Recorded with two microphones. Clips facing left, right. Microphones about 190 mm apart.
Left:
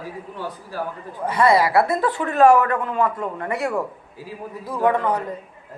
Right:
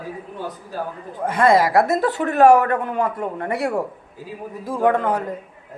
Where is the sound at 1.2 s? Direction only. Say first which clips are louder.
Right 1 dB; 50° right (ahead or behind).